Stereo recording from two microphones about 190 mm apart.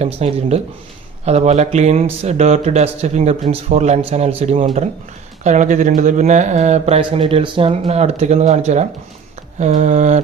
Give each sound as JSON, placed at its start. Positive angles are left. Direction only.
{"t": 0.0, "sound": "speech", "side_deg": -30}